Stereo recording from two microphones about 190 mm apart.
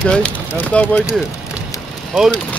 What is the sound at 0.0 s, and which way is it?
Speech, 5° left (ahead or behind).